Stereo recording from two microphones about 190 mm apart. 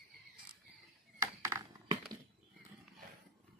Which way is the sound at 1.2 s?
15° right (ahead or behind).